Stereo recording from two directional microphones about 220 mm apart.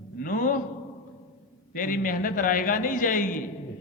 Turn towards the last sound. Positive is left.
turn(degrees=35)  # may be behind; listen again after turning